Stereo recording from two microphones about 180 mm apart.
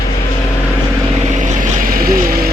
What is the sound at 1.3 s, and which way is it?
Vehicle, 45° right (ahead or behind).